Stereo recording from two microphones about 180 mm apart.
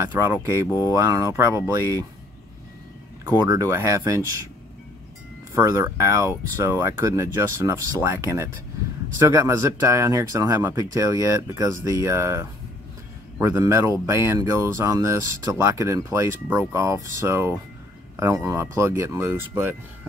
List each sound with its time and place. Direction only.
0.0 s speech: 10° right (ahead or behind)
3.3 s speech: 20° right (ahead or behind)
5.5 s speech: 15° right (ahead or behind)
9.2 s speech: 15° right (ahead or behind)